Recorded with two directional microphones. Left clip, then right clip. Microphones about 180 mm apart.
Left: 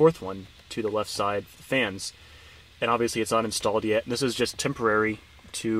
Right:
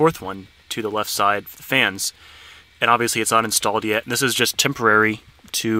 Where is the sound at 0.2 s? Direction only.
35° right (ahead or behind).